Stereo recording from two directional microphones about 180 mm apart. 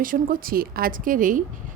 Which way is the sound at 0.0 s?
50° right (ahead or behind).